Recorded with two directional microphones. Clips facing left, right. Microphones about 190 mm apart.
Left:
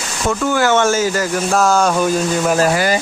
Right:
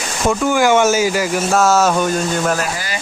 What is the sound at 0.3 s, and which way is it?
Speech, 15° right (ahead or behind).